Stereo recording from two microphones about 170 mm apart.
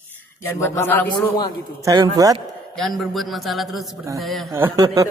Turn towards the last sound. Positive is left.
turn(degrees=-20)  # may be behind; listen again after turning